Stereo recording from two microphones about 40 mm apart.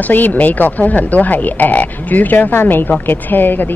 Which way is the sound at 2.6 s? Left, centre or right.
Left.